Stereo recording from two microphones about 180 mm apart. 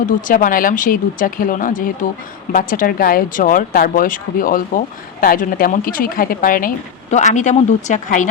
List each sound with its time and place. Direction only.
0.0 s a woman's voice: 50° left (ahead or behind)